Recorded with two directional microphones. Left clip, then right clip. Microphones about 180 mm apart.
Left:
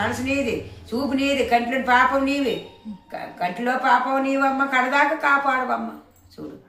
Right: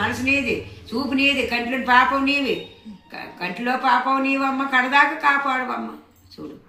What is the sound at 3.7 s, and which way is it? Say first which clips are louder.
A woman's voice: right 1 dB; 20° left (ahead or behind).